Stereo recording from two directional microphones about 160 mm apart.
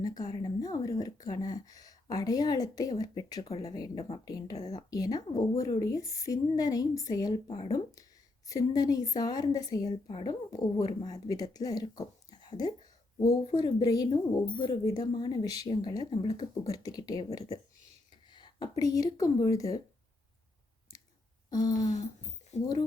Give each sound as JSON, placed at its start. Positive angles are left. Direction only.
{"t": 0.0, "sound": "speech", "side_deg": 25}
{"t": 18.3, "sound": "speech", "side_deg": 30}
{"t": 22.5, "sound": "speech", "side_deg": 45}